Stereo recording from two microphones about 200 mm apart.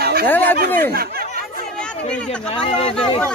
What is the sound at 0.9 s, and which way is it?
Speech, 50° right (ahead or behind).